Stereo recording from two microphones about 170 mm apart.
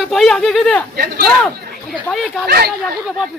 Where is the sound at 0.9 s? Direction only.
60° right (ahead or behind).